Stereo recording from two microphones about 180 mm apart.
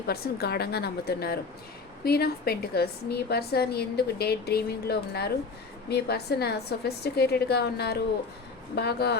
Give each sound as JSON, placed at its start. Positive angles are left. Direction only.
{"t": 0.1, "sound": "a woman's voice", "side_deg": 60}